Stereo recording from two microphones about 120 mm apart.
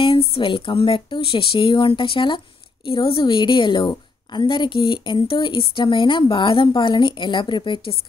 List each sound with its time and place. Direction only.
0.0 s a woman's voice: 55° left (ahead or behind)